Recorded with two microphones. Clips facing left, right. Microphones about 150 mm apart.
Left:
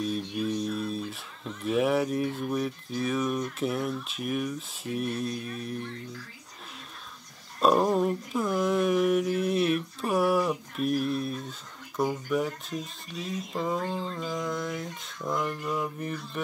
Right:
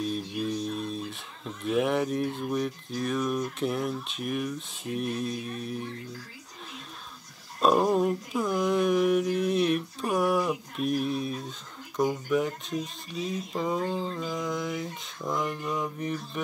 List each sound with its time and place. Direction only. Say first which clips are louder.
0.0 s speech: left 1 dB; centre (ahead or behind)
7.6 s speech: even; centre (ahead or behind)